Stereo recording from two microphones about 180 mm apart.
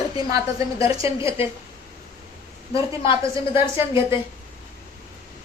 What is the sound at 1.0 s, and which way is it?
Speech, 15° right (ahead or behind).